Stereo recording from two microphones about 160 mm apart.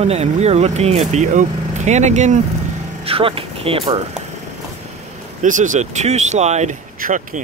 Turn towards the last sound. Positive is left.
turn(degrees=-50)  # may be behind; listen again after turning